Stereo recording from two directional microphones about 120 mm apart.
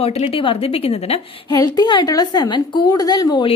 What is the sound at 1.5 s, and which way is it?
A woman's voice, 30° left (ahead or behind).